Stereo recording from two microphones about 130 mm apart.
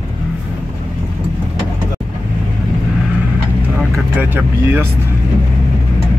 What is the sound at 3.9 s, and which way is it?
Vehicle, 15° right (ahead or behind).